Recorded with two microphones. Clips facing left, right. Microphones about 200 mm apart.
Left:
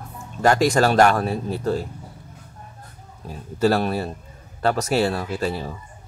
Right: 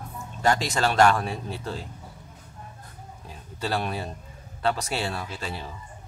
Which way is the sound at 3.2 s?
40° left (ahead or behind).